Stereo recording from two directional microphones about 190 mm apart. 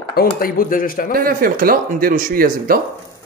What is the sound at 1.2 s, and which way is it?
Speech, 50° right (ahead or behind).